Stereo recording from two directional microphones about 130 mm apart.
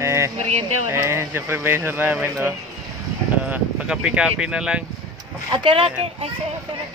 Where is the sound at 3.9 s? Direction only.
5° right (ahead or behind).